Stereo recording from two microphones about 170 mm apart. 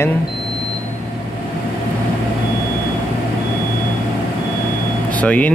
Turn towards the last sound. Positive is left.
turn(degrees=10)  # may be behind; listen again after turning